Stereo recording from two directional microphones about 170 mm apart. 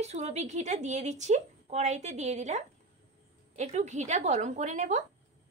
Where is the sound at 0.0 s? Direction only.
40° right (ahead or behind).